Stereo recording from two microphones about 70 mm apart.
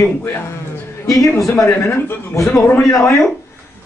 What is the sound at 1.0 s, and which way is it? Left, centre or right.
Speech, left.